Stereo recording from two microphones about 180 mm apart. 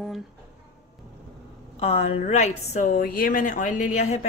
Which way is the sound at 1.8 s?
35° left (ahead or behind).